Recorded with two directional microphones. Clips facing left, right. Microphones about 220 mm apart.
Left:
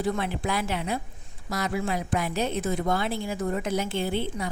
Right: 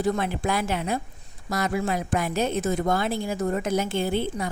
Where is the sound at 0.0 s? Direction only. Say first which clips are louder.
Right 3 dB; 45° right (ahead or behind).